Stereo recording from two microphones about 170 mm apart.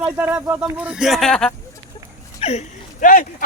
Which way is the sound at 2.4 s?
40° left (ahead or behind).